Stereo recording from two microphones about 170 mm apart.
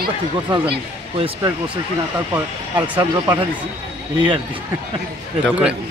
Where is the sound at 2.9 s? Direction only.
20° right (ahead or behind).